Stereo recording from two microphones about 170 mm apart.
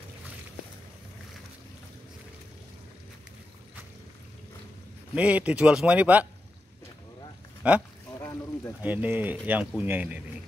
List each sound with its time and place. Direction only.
5.1 s speech: 10° right (ahead or behind)
7.6 s speech: 5° right (ahead or behind)
8.2 s a sound: 15° left (ahead or behind)
8.8 s speech: 10° right (ahead or behind)